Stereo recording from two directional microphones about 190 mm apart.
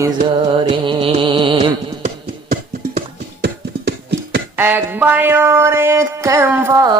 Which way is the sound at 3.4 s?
60° right (ahead or behind).